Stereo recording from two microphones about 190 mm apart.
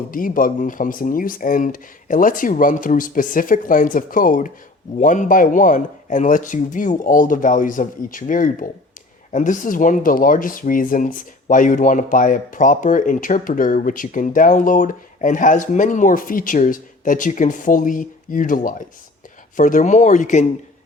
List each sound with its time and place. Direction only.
0.1 s speech: 45° left (ahead or behind)